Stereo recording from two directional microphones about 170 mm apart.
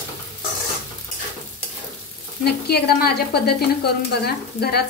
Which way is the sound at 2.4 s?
70° left (ahead or behind).